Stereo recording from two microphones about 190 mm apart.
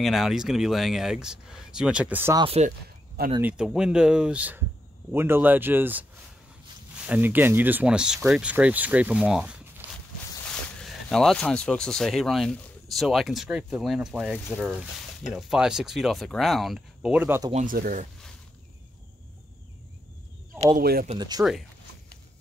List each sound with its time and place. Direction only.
0.0 s speech: centre (ahead or behind)
2.3 s speech: 30° right (ahead or behind)
3.3 s speech: 5° right (ahead or behind)
7.1 s speech: 10° right (ahead or behind)
17.5 s speech: 35° right (ahead or behind)
17.7 s speech: 50° right (ahead or behind)
20.7 s speech: 50° right (ahead or behind)
21.2 s speech: 20° right (ahead or behind)